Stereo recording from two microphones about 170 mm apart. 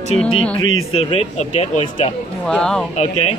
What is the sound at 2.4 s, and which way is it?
Speech, 5° left (ahead or behind).